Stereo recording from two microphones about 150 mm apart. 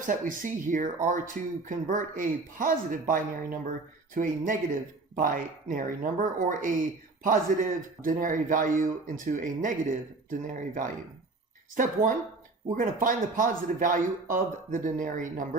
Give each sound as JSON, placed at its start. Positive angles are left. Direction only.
{"t": 0.0, "sound": "a man's voice", "side_deg": -60}